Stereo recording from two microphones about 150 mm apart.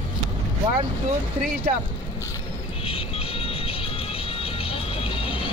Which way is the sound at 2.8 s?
40° left (ahead or behind).